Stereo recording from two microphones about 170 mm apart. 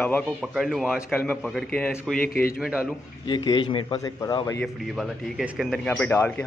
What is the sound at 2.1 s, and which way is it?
Speech, 60° left (ahead or behind).